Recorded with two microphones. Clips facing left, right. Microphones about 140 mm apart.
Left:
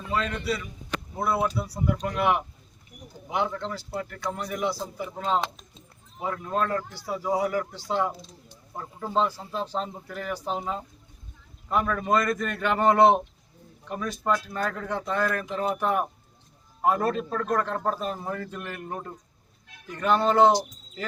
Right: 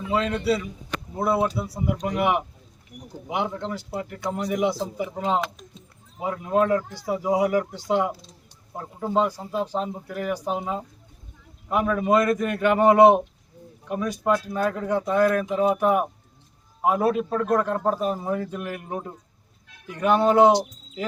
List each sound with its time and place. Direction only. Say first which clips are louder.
0.1 s a man's voice: right 5 dB; 20° right (ahead or behind)